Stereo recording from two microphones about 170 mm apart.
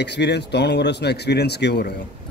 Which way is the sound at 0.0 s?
85° left.